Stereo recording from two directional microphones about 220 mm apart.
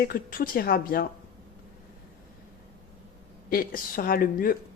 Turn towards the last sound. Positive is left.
turn(degrees=40)  # may be behind; listen again after turning